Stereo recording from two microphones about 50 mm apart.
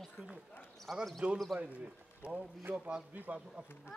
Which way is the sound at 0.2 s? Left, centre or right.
Centre.